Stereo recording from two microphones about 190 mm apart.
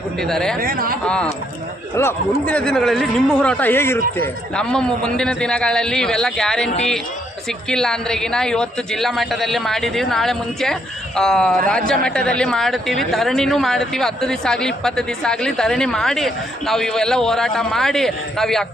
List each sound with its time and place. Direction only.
0.2 s speech: centre (ahead or behind)
0.6 s speech: 50° right (ahead or behind)
1.0 s speech: 5° left (ahead or behind)
7.7 s speech: 5° left (ahead or behind)